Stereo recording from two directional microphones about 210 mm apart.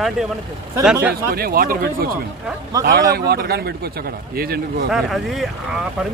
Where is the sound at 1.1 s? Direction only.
45° right (ahead or behind).